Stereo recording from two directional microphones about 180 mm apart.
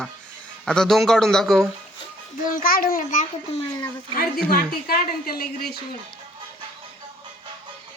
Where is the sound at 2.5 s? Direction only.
50° left (ahead or behind).